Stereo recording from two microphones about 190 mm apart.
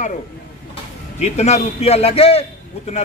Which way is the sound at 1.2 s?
35° left (ahead or behind).